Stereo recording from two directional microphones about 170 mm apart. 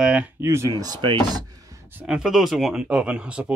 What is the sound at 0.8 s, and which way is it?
Speech, 25° right (ahead or behind).